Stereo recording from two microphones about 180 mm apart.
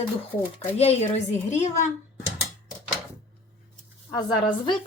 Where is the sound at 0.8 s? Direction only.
35° left (ahead or behind).